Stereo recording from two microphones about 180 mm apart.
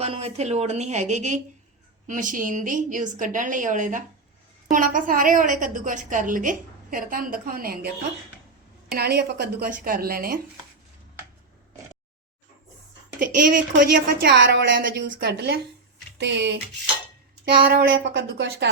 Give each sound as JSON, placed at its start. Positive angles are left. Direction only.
{"t": 0.0, "sound": "a woman's voice", "side_deg": -35}
{"t": 13.1, "sound": "a woman's voice", "side_deg": -50}
{"t": 13.7, "sound": "a woman's voice", "side_deg": -75}
{"t": 17.7, "sound": "a woman's voice", "side_deg": -65}